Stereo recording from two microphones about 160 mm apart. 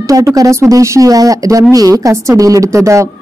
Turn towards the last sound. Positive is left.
turn(degrees=-20)  # may be behind; listen again after turning